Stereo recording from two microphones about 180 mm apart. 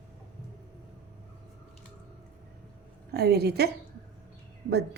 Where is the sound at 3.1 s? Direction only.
60° right (ahead or behind).